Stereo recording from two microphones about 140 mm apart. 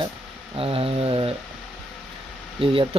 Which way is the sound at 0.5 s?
40° right (ahead or behind).